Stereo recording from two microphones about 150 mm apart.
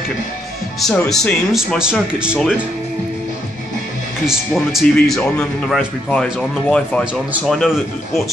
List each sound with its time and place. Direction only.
0.7 s speech: centre (ahead or behind)
4.3 s speech: centre (ahead or behind)